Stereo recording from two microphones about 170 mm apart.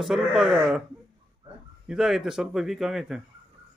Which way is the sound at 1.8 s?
Centre (ahead or behind).